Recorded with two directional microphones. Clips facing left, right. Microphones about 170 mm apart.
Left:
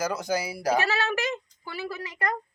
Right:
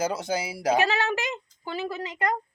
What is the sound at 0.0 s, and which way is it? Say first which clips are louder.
Speech: even; 25° right (ahead or behind).